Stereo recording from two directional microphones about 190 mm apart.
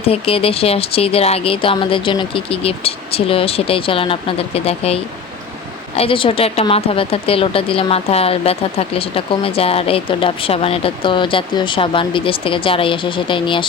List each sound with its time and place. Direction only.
0.0 s speech: 30° left (ahead or behind)
6.0 s speech: 30° left (ahead or behind)